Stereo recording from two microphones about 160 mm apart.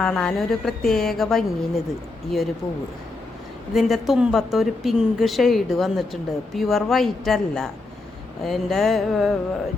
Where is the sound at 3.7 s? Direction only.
Centre (ahead or behind).